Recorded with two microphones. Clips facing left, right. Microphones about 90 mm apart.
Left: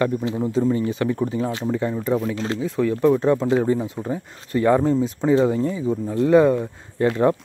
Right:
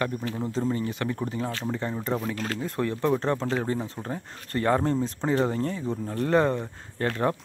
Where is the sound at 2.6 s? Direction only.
Centre (ahead or behind).